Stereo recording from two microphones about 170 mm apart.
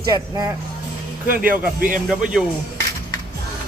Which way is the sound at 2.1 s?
5° right (ahead or behind).